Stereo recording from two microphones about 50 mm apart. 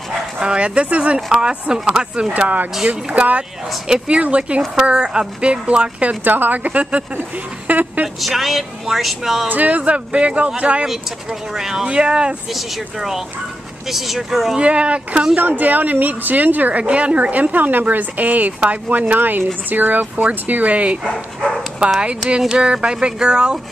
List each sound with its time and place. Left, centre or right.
0.4 s speech: right
2.3 s a woman's voice: right; by 4.2 s centre
4.2 s speech: right
6.2 s a woman's voice: right
8.2 s speech: centre
9.5 s speech: right
10.9 s speech: centre
12.5 s speech: centre
14.6 s speech: right
15.3 s a woman's voice: right
21.1 s dog: centre
22.6 s speech: right